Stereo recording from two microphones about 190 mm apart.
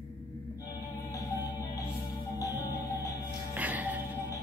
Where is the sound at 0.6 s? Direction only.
15° left (ahead or behind).